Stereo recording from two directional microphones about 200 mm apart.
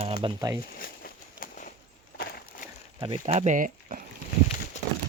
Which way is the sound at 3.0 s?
35° right (ahead or behind).